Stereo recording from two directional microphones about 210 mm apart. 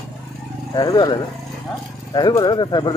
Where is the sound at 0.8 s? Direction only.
20° left (ahead or behind).